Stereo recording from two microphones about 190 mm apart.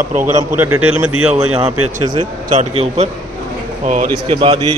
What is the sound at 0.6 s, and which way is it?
Speech, 10° right (ahead or behind).